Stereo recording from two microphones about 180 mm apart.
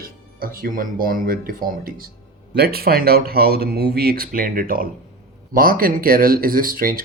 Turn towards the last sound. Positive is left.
turn(degrees=-50)  # may be behind; listen again after turning